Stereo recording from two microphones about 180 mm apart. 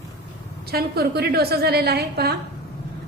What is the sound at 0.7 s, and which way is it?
A woman's voice, 60° right (ahead or behind).